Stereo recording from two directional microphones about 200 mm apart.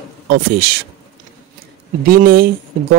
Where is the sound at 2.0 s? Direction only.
50° right (ahead or behind).